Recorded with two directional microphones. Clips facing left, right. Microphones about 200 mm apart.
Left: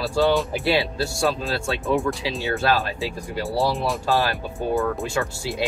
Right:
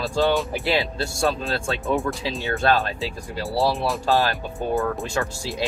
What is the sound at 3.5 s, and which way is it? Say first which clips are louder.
Speech: right 1 dB; 15° left (ahead or behind).